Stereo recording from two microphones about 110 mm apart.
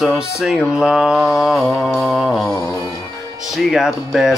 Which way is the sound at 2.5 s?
25° left (ahead or behind).